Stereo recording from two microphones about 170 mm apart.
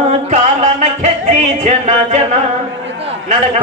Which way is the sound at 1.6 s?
40° right (ahead or behind).